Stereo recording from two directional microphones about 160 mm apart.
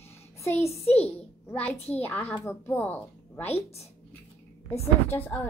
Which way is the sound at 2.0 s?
10° left (ahead or behind).